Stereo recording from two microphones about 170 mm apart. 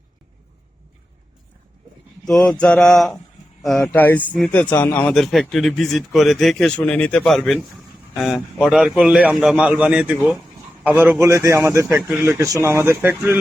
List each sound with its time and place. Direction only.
2.2 s a man's voice: 5° left (ahead or behind); by 13.3 s 15° right (ahead or behind)